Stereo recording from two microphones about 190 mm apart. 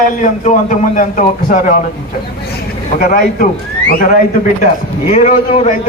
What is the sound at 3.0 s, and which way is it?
Speech, 50° left (ahead or behind).